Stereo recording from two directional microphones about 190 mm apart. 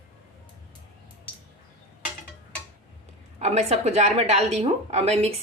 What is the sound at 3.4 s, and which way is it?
A woman's voice, 35° right (ahead or behind).